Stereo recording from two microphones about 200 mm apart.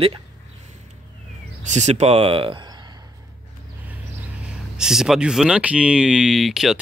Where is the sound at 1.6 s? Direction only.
35° right (ahead or behind).